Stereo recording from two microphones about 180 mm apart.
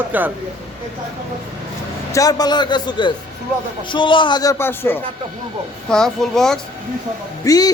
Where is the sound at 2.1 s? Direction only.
20° left (ahead or behind); by 6.6 s centre (ahead or behind).